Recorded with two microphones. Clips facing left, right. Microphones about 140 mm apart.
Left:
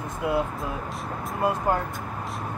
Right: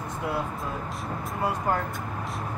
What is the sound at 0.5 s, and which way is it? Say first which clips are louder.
Speech: left 1 dB; centre (ahead or behind).